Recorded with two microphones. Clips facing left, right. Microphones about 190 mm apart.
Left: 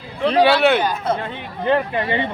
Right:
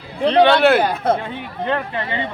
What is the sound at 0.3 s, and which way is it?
Speech, 5° left (ahead or behind).